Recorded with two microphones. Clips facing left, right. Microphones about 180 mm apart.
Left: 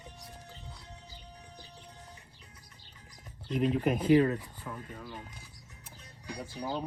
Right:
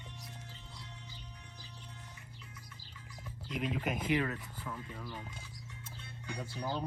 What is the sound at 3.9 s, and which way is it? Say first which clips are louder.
Speech: left 12 dB; 30° left (ahead or behind).